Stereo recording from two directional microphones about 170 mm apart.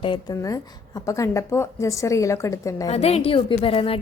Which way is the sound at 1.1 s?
20° left (ahead or behind).